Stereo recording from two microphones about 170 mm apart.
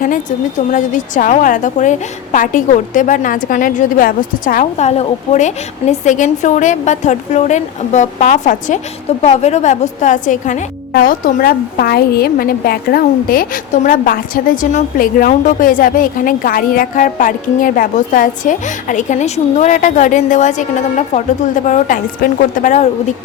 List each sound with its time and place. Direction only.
0.0 s a woman's voice: 50° left (ahead or behind)